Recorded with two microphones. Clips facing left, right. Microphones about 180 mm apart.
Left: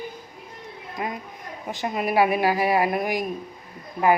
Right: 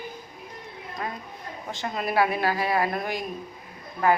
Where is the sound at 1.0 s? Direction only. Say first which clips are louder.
Left 4 dB; 15° left (ahead or behind).